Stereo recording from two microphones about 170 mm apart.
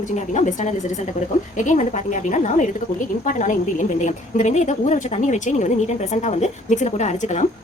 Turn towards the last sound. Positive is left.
turn(degrees=40)  # may be behind; listen again after turning